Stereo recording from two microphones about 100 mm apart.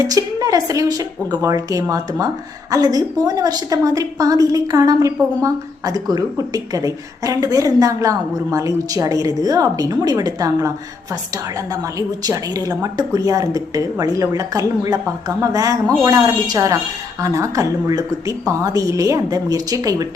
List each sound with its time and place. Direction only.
0.0 s a woman's voice: 35° right (ahead or behind)
11.7 s a woman's voice: 35° right (ahead or behind)